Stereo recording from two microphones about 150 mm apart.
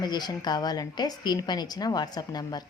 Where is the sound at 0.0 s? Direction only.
30° left (ahead or behind).